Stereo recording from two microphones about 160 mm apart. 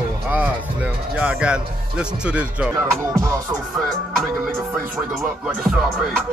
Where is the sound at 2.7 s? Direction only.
20° right (ahead or behind).